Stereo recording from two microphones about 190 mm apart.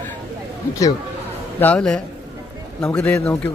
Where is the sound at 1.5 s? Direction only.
5° left (ahead or behind).